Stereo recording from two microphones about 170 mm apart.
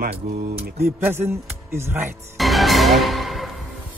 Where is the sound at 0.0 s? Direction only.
65° right (ahead or behind).